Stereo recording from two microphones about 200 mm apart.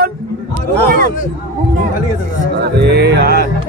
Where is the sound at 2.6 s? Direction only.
55° right (ahead or behind).